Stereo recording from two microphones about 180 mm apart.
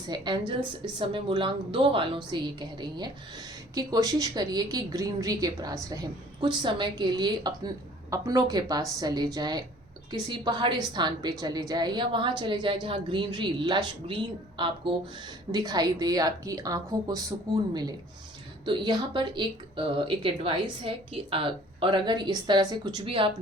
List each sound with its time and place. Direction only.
0.1 s a woman's voice: 25° right (ahead or behind)